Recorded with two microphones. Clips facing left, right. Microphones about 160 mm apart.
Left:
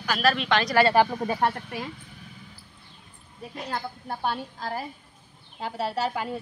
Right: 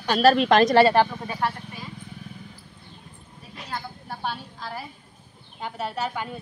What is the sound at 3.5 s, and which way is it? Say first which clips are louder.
A woman's voice: left 2 dB; 50° left (ahead or behind).